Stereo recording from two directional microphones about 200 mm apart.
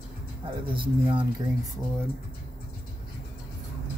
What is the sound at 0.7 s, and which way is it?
Speech, 25° right (ahead or behind).